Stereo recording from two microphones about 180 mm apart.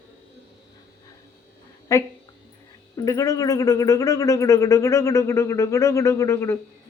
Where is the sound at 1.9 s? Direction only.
15° left (ahead or behind).